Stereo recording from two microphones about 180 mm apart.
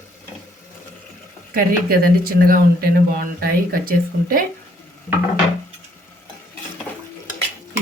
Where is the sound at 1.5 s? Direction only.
55° right (ahead or behind).